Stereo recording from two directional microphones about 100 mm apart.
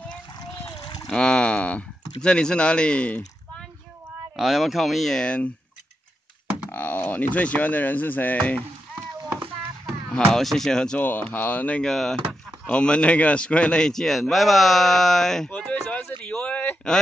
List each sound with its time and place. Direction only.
0.7 s splash: 45° left (ahead or behind)
1.1 s pour: 10° left (ahead or behind)
2.2 s speech: 10° left (ahead or behind)
4.4 s speech: 5° right (ahead or behind)
6.7 s speech: 15° left (ahead or behind)
10.1 s speech: 5° left (ahead or behind)
16.2 s a sound: 10° left (ahead or behind)